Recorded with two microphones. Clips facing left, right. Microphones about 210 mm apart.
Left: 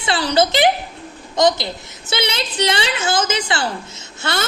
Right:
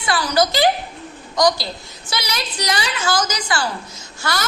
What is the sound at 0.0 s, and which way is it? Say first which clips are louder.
A woman's voice: left 2 dB; 25° left (ahead or behind).